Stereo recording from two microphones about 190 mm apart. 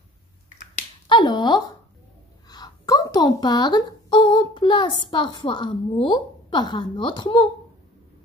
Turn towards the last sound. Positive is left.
turn(degrees=25)  # may be behind; listen again after turning